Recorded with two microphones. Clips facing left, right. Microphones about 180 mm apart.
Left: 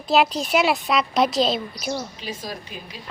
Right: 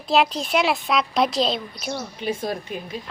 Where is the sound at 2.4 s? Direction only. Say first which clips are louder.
Right 6 dB; 55° right (ahead or behind).